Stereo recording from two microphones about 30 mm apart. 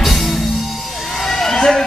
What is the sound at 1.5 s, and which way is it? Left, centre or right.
Music, left.